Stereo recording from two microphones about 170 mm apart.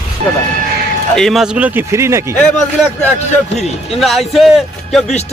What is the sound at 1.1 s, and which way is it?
Speech, centre (ahead or behind).